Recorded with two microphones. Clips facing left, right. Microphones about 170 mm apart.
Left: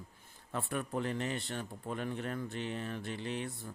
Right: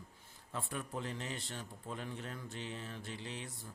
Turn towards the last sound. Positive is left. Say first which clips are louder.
# left 7 dB
turn(degrees=60)  # may be behind; listen again after turning